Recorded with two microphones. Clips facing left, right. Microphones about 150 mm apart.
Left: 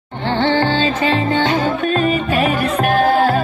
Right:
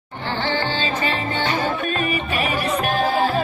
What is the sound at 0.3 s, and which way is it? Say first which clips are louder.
Music: left 8 dB; 60° left (ahead or behind).